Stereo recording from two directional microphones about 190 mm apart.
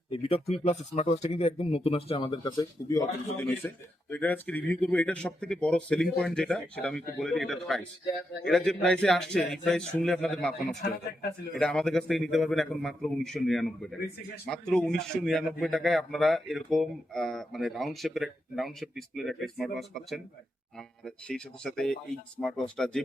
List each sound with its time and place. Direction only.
0.1 s speech: 30° left (ahead or behind)
3.3 s a man's voice: 10° left (ahead or behind)